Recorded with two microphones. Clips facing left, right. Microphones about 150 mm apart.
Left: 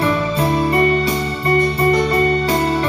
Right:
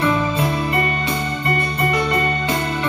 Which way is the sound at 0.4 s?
35° left (ahead or behind).